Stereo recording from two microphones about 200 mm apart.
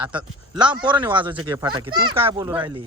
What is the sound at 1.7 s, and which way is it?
Speech, 20° right (ahead or behind).